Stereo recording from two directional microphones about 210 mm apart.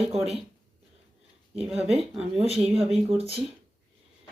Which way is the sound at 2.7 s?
25° right (ahead or behind).